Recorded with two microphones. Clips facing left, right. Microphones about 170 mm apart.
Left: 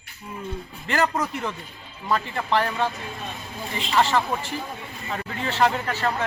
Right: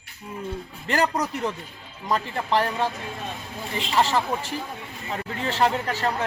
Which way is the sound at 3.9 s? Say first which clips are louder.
Left 1 dB; 35° right (ahead or behind).